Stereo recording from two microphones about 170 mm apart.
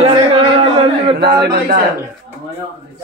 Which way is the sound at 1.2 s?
75° right (ahead or behind).